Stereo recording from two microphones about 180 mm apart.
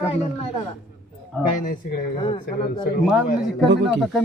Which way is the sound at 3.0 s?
5° right (ahead or behind).